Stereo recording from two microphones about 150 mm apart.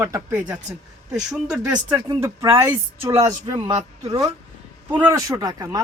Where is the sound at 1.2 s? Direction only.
5° right (ahead or behind).